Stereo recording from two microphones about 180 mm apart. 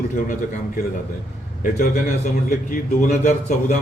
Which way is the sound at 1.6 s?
50° left (ahead or behind).